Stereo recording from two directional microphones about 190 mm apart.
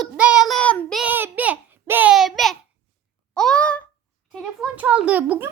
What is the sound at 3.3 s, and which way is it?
Child singing, 5° left (ahead or behind).